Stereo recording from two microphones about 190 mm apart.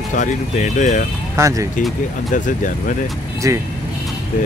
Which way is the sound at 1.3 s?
15° right (ahead or behind).